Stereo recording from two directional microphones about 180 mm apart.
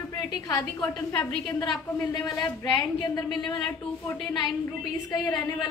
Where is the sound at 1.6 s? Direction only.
25° left (ahead or behind).